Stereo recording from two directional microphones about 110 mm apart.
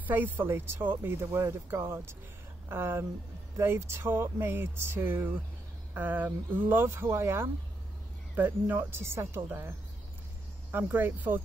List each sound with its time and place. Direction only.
0.0 s speech: 15° right (ahead or behind)